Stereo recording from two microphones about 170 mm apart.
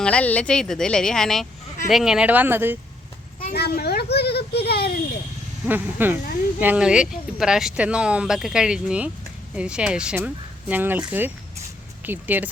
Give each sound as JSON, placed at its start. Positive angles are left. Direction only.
{"t": 0.0, "sound": "speech", "side_deg": 5}
{"t": 3.5, "sound": "a child's voice", "side_deg": 70}
{"t": 5.6, "sound": "speech", "side_deg": -10}